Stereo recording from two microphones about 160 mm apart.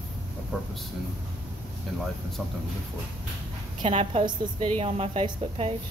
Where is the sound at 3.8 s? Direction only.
35° right (ahead or behind).